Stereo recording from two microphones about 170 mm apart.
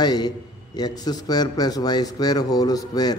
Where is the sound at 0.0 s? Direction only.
25° left (ahead or behind).